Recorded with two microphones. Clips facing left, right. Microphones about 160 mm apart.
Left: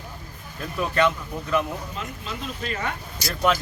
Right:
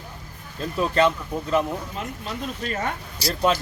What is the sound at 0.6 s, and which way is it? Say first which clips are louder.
Speech: right 2 dB; 30° right (ahead or behind).